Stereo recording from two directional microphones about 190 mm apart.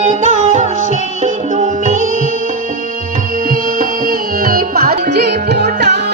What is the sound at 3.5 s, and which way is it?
Music, 50° right (ahead or behind).